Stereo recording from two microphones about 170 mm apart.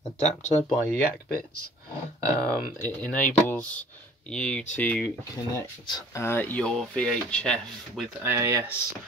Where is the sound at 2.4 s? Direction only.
5° left (ahead or behind).